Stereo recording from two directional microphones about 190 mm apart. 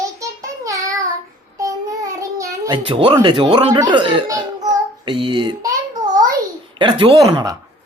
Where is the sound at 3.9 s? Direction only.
25° right (ahead or behind).